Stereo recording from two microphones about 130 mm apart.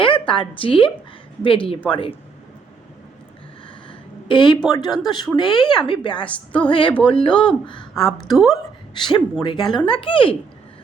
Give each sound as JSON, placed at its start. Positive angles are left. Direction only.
{"t": 0.0, "sound": "a woman's voice", "side_deg": 40}
{"t": 3.8, "sound": "a sound", "side_deg": 40}
{"t": 4.7, "sound": "a woman's voice", "side_deg": 30}
{"t": 8.0, "sound": "a woman's voice", "side_deg": 0}
{"t": 9.0, "sound": "a woman's voice", "side_deg": 35}